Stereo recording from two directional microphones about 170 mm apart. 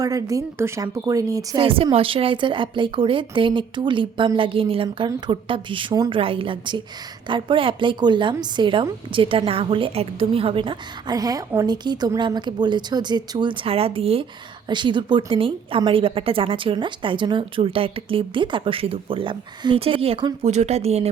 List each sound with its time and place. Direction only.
0.0 s a woman's voice: 20° right (ahead or behind)
1.6 s a woman's voice: 35° right (ahead or behind)